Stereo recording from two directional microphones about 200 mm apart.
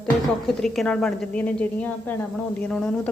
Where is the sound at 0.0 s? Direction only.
Centre (ahead or behind).